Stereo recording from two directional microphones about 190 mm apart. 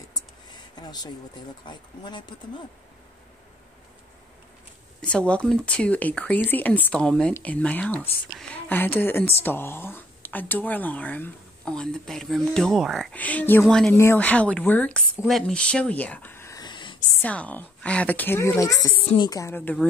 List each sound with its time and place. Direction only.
0.7 s speech: 20° left (ahead or behind)
5.0 s speech: 5° left (ahead or behind); by 17.0 s 25° left (ahead or behind)
17.2 s speech: 10° left (ahead or behind)